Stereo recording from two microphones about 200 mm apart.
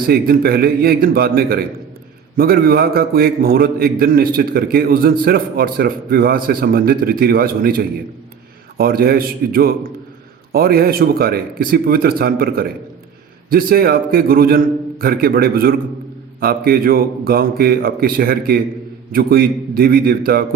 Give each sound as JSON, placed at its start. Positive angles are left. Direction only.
{"t": 0.1, "sound": "a man's voice", "side_deg": -50}